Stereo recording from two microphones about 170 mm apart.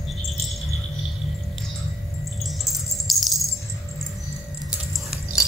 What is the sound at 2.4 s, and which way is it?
Music, centre (ahead or behind).